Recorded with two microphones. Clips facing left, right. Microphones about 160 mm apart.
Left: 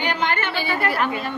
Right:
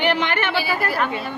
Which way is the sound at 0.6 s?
Centre (ahead or behind).